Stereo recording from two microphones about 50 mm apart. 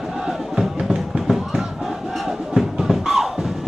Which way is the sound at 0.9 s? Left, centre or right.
Centre.